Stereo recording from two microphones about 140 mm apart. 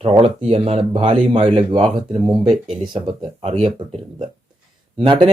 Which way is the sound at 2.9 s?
40° right (ahead or behind).